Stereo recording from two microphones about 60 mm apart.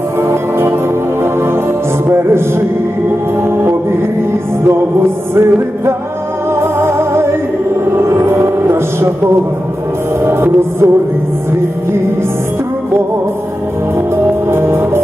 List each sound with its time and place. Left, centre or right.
0.2 s music: right
2.0 s a sound: right
5.3 s music: right
14.5 s music: right